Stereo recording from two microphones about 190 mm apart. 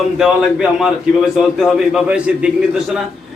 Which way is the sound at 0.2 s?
Centre (ahead or behind).